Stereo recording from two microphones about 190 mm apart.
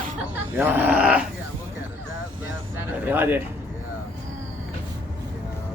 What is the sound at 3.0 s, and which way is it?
Speech, 10° right (ahead or behind).